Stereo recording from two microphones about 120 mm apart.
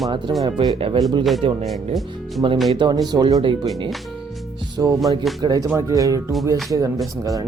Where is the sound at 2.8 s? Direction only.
40° right (ahead or behind).